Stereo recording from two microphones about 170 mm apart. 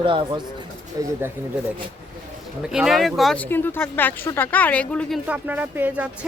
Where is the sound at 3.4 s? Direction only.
10° left (ahead or behind).